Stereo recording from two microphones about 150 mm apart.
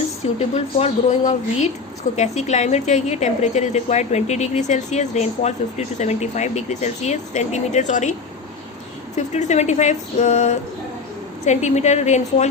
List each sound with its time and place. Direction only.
0.3 s a woman's voice: 45° left (ahead or behind)
9.1 s a woman's voice: 50° left (ahead or behind)